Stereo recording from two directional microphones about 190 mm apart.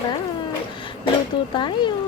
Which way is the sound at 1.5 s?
25° left (ahead or behind).